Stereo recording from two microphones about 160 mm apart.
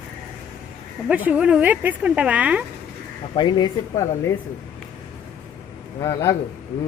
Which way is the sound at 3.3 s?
30° left (ahead or behind).